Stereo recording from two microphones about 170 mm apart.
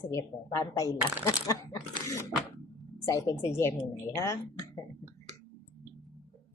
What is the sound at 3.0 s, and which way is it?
A woman's voice, 20° left (ahead or behind).